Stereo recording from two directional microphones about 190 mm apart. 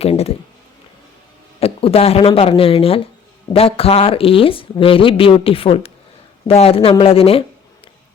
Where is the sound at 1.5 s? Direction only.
30° left (ahead or behind).